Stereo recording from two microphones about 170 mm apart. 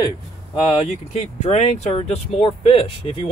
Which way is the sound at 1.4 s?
40° left (ahead or behind).